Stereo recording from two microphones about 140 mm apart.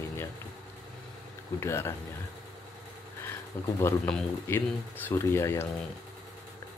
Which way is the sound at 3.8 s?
15° left (ahead or behind).